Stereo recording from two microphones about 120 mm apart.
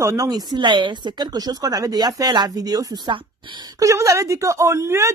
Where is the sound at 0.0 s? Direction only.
25° right (ahead or behind).